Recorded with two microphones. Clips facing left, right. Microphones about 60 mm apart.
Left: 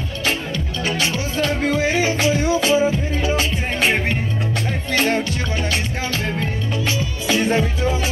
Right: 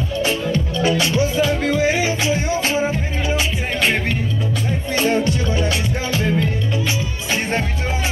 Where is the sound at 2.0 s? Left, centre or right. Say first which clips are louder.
Left 1 dB; left.